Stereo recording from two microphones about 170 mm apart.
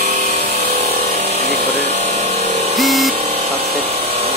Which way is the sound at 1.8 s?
40° right (ahead or behind).